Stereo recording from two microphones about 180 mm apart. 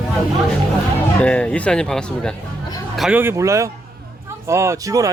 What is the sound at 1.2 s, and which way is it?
A man's voice, 5° left (ahead or behind).